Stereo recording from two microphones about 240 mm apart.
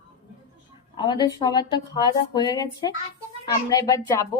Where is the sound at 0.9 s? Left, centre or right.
Centre.